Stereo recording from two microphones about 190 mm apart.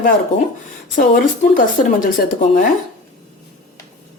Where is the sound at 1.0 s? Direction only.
45° left (ahead or behind).